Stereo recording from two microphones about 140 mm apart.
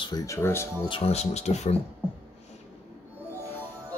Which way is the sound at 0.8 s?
40° left (ahead or behind).